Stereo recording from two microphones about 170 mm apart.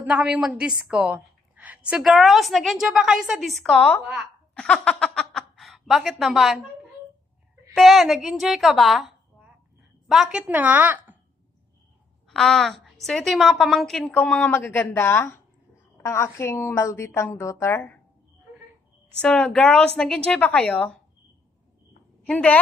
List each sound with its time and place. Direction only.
0.0 s a woman's voice: 5° right (ahead or behind)
7.7 s a woman's voice: centre (ahead or behind)
12.3 s a woman's voice: 5° left (ahead or behind)
19.2 s a woman's voice: 5° left (ahead or behind)
22.2 s a woman's voice: 10° left (ahead or behind)